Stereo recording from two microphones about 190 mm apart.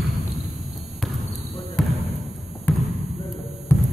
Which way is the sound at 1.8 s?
5° left (ahead or behind).